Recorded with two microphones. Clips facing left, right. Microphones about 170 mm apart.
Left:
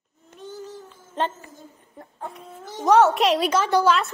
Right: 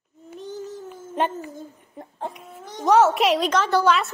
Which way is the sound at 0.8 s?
15° right (ahead or behind).